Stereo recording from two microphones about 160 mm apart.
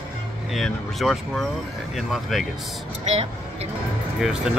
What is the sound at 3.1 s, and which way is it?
Speech, 40° right (ahead or behind).